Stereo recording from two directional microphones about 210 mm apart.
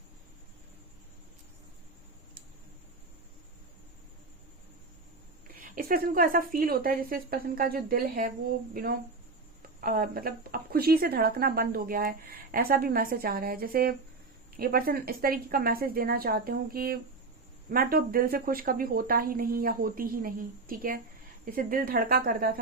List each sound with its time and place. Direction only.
5.5 s speech: 40° right (ahead or behind)